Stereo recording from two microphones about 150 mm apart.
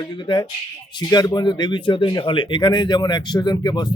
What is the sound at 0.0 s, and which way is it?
A man's voice, 30° left (ahead or behind).